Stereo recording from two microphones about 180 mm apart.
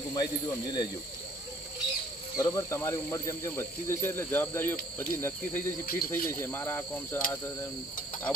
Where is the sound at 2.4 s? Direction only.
15° left (ahead or behind).